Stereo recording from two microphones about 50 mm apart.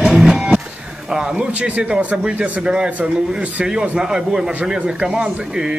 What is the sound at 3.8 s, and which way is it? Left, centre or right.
Speech, centre.